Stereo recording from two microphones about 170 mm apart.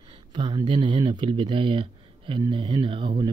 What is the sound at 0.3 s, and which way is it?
Speech, 25° right (ahead or behind).